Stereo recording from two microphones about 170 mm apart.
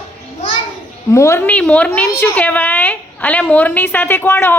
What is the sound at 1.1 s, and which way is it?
A woman's voice, 15° left (ahead or behind).